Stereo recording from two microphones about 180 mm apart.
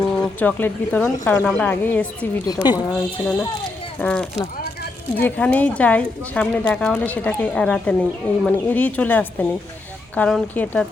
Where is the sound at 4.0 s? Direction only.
5° left (ahead or behind).